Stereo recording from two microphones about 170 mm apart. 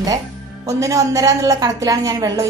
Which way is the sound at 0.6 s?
20° right (ahead or behind).